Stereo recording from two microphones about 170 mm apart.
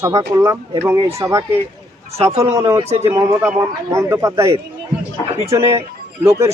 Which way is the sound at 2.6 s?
20° right (ahead or behind).